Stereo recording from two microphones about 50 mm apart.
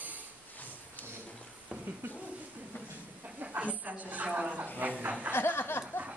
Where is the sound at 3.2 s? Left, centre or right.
Right.